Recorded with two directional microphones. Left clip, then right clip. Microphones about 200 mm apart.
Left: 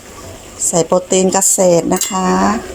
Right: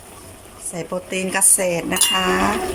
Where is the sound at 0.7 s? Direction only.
25° left (ahead or behind).